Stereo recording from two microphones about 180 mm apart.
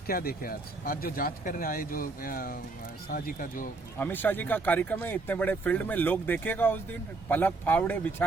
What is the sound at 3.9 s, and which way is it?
Speech, 10° left (ahead or behind).